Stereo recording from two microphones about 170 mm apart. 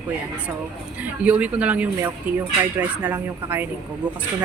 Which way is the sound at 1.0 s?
10° right (ahead or behind).